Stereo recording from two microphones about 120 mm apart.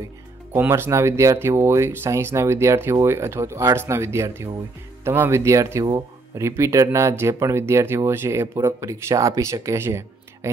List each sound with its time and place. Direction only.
0.5 s speech: 20° right (ahead or behind)